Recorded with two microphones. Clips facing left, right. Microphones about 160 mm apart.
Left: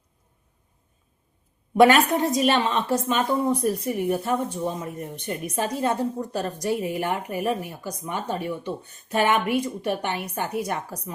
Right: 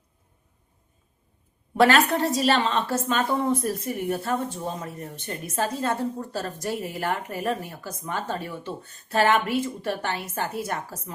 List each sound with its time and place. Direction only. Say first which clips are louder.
1.7 s speech: left 3 dB; 15° left (ahead or behind)